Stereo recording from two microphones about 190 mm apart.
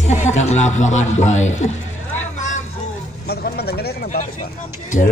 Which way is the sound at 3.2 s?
55° left (ahead or behind).